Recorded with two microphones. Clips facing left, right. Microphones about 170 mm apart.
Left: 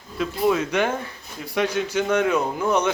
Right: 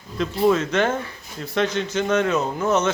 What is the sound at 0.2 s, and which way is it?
A man's voice, 10° left (ahead or behind).